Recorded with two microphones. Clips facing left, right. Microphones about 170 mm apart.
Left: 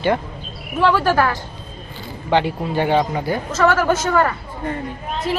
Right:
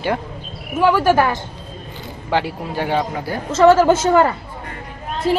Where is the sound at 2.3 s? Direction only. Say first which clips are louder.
Left 3 dB; 5° right (ahead or behind).